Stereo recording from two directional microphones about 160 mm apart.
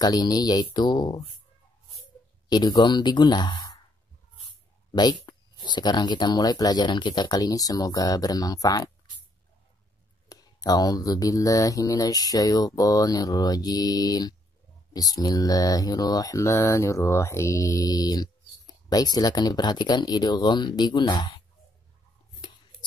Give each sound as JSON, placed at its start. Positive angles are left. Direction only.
{"t": 0.0, "sound": "mantra", "side_deg": 25}
{"t": 2.5, "sound": "mantra", "side_deg": 25}
{"t": 4.9, "sound": "mantra", "side_deg": 25}
{"t": 10.2, "sound": "mantra", "side_deg": 25}
{"t": 22.4, "sound": "a sound", "side_deg": 30}